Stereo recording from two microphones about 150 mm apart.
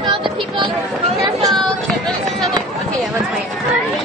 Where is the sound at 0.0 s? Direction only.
35° right (ahead or behind).